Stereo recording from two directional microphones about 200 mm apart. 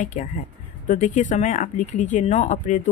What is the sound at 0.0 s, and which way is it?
Speech, 40° left (ahead or behind).